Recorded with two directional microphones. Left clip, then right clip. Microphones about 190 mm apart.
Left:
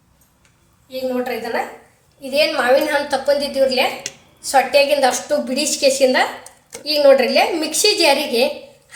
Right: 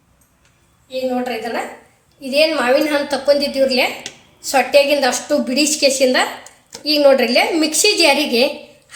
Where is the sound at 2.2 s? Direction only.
15° right (ahead or behind).